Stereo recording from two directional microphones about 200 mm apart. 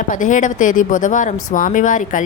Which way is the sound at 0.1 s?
40° left (ahead or behind).